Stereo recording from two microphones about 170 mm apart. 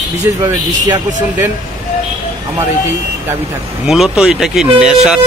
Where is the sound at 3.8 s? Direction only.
Centre (ahead or behind).